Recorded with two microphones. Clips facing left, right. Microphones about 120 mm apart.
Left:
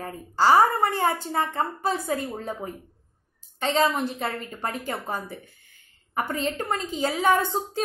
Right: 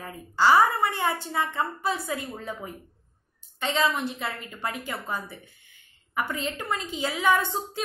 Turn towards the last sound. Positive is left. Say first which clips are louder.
# left 2 dB
turn(degrees=40)  # may be behind; listen again after turning